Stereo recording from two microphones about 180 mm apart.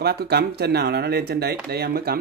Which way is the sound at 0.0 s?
60° right (ahead or behind).